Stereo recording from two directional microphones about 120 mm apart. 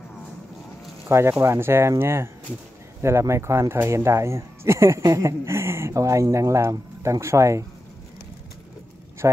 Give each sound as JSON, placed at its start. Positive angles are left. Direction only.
{"t": 1.0, "sound": "speech", "side_deg": -25}
{"t": 9.2, "sound": "speech", "side_deg": -25}